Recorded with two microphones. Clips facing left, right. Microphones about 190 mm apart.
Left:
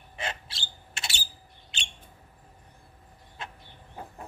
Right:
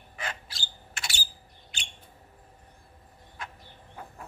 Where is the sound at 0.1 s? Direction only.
25° left (ahead or behind).